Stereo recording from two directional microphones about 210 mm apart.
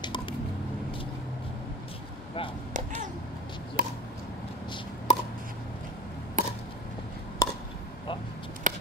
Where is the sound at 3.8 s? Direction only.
40° right (ahead or behind).